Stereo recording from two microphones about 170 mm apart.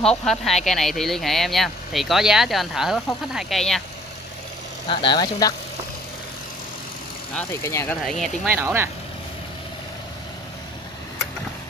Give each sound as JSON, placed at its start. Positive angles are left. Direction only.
{"t": 0.0, "sound": "speech", "side_deg": 5}
{"t": 4.8, "sound": "speech", "side_deg": 30}
{"t": 7.3, "sound": "speech", "side_deg": 15}
{"t": 8.0, "sound": "speech", "side_deg": 0}
{"t": 8.5, "sound": "speech", "side_deg": -15}